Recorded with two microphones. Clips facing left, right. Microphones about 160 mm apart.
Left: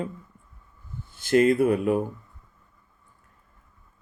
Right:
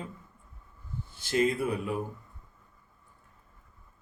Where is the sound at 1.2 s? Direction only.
60° left (ahead or behind).